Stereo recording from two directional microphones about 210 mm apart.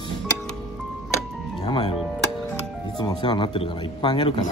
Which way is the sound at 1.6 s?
25° left (ahead or behind).